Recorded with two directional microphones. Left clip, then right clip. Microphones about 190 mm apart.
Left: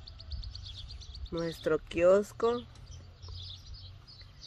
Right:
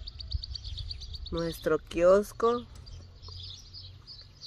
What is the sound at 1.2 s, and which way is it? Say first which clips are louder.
Speech: right 2 dB; 10° right (ahead or behind).